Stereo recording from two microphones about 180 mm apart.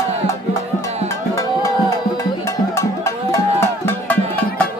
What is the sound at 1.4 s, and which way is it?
Music, 20° left (ahead or behind).